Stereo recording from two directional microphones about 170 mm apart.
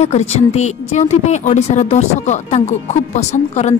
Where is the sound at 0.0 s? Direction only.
40° left (ahead or behind).